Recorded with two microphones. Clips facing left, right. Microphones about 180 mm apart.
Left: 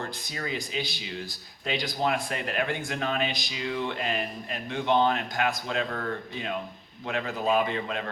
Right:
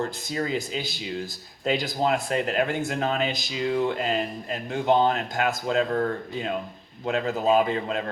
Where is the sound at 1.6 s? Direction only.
40° right (ahead or behind).